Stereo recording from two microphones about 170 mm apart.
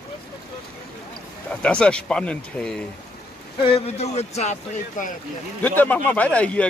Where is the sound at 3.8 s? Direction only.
40° left (ahead or behind).